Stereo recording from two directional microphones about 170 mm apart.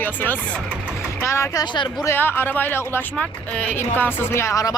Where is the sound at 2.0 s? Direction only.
10° left (ahead or behind).